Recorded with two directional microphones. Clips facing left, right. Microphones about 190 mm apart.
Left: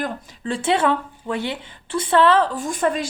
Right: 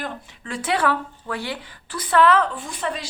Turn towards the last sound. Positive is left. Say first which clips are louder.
# left 7 dB
turn(degrees=50)  # may be behind; listen again after turning